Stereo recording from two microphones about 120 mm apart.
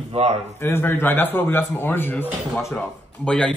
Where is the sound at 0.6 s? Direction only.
20° left (ahead or behind).